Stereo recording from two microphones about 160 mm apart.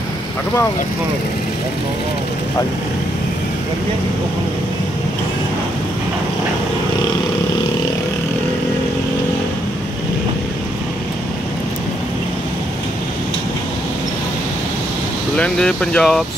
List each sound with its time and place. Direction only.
15.3 s speech: 5° left (ahead or behind)